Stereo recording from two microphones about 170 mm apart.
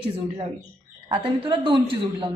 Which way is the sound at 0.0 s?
35° right (ahead or behind).